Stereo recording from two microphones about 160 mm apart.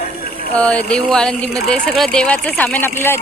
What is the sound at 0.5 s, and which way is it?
Speech, 10° left (ahead or behind).